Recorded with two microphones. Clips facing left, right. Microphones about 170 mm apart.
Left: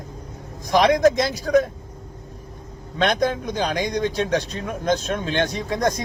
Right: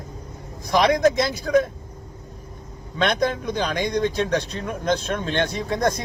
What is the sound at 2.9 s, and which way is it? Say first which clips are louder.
Speech: left 1 dB; 40° left (ahead or behind).